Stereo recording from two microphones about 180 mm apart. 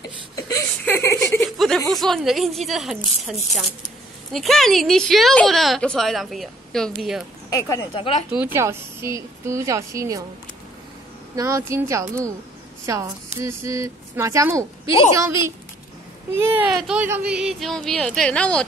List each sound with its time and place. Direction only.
0.0 s a sound: 20° left (ahead or behind)
1.4 s chuckle: centre (ahead or behind)
1.9 s a woman's voice: centre (ahead or behind)
4.3 s a woman's voice: centre (ahead or behind)
7.4 s speech: 20° left (ahead or behind)
8.3 s a woman's voice: 10° right (ahead or behind)
11.3 s a woman's voice: 20° right (ahead or behind)
14.9 s speech: 30° left (ahead or behind)
16.3 s a woman's voice: 10° right (ahead or behind)